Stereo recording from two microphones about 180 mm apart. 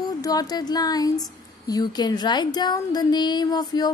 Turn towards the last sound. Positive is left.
turn(degrees=20)  # may be behind; listen again after turning